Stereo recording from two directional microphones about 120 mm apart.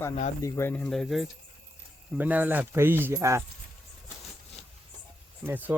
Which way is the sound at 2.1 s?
15° right (ahead or behind).